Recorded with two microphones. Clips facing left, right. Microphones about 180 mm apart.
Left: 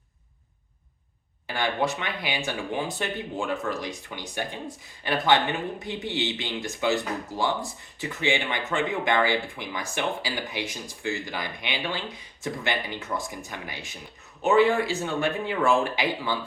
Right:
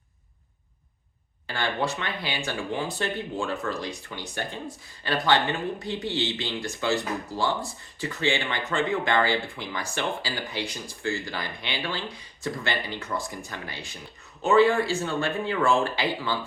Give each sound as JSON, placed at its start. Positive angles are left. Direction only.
{"t": 1.5, "sound": "speech", "side_deg": 20}